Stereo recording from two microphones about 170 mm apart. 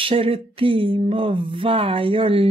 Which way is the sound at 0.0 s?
35° right (ahead or behind).